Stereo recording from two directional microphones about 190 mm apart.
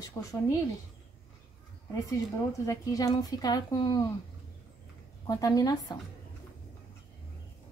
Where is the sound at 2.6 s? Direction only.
20° left (ahead or behind).